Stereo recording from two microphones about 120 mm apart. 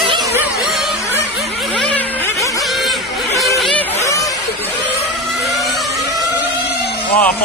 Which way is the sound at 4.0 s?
25° left (ahead or behind).